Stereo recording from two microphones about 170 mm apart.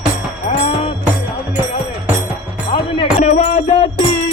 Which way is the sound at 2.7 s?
35° left (ahead or behind).